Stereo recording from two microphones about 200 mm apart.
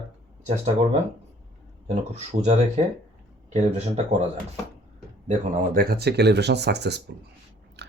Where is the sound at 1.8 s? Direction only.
35° right (ahead or behind).